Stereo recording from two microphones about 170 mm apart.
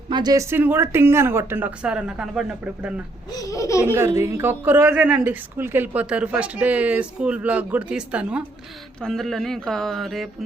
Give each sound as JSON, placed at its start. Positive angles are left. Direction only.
{"t": 0.1, "sound": "speech", "side_deg": -25}
{"t": 0.5, "sound": "speech", "side_deg": -10}
{"t": 3.3, "sound": "speech", "side_deg": 20}
{"t": 3.9, "sound": "speech", "side_deg": -15}